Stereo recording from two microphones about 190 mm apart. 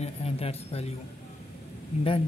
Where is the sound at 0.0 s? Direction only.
30° left (ahead or behind).